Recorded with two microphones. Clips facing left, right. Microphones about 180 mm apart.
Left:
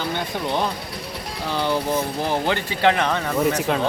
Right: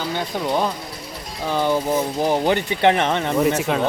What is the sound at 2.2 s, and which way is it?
Speech, 15° right (ahead or behind).